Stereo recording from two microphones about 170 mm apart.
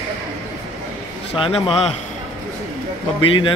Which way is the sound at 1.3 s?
35° left (ahead or behind).